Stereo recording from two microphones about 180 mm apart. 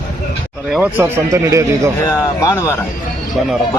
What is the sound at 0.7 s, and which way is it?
Speech, 10° right (ahead or behind).